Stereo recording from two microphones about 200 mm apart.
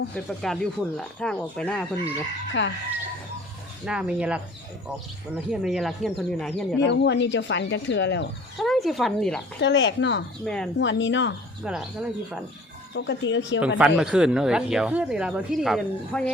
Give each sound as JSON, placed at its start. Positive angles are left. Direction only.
{"t": 0.3, "sound": "speech", "side_deg": 0}
{"t": 2.5, "sound": "speech", "side_deg": 65}
{"t": 3.8, "sound": "speech", "side_deg": -5}
{"t": 5.5, "sound": "speech", "side_deg": 0}
{"t": 6.8, "sound": "speech", "side_deg": 60}
{"t": 8.5, "sound": "speech", "side_deg": 0}
{"t": 9.6, "sound": "speech", "side_deg": 60}
{"t": 10.4, "sound": "speech", "side_deg": 5}
{"t": 10.8, "sound": "speech", "side_deg": 65}
{"t": 11.6, "sound": "speech", "side_deg": 0}
{"t": 12.9, "sound": "speech", "side_deg": 65}
{"t": 13.7, "sound": "speech", "side_deg": -5}